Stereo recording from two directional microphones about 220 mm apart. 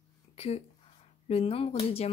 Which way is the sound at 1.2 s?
25° left (ahead or behind).